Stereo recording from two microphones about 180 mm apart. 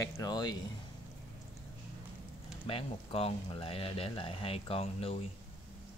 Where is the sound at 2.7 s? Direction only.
30° left (ahead or behind).